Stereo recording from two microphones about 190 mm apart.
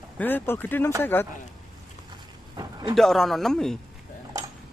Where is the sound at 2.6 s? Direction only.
25° right (ahead or behind).